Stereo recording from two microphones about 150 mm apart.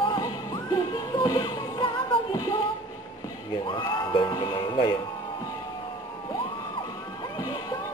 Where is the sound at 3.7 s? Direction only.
30° left (ahead or behind).